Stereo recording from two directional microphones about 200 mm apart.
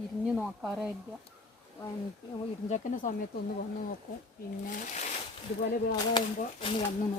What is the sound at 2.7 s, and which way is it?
Speech, 40° left (ahead or behind).